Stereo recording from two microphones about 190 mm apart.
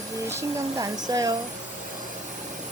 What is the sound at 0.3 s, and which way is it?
Speech, 15° right (ahead or behind).